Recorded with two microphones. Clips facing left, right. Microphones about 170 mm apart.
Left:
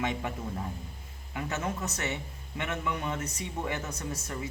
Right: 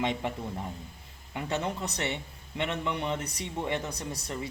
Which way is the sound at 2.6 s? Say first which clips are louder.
Right 2 dB; 25° right (ahead or behind).